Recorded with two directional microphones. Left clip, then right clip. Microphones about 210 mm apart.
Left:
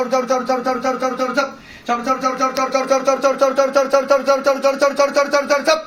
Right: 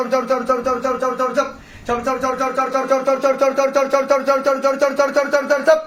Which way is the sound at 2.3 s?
10° right (ahead or behind).